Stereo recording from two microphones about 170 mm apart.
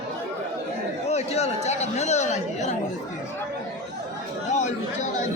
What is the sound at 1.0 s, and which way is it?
Speech, 40° left (ahead or behind).